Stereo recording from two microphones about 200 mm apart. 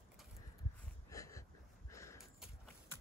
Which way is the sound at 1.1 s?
15° left (ahead or behind).